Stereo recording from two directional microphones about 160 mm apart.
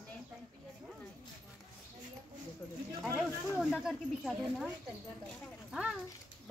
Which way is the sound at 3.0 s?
Centre (ahead or behind).